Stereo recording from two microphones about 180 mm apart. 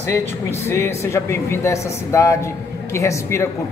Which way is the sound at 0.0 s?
15° left (ahead or behind).